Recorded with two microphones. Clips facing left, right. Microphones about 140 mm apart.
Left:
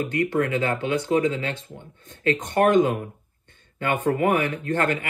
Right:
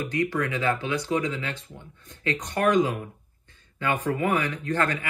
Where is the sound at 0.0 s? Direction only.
50° left (ahead or behind).